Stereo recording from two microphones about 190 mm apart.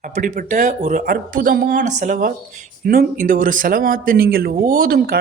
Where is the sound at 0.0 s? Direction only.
45° right (ahead or behind).